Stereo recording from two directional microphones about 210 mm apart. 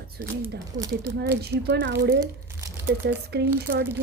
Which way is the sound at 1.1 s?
50° right (ahead or behind).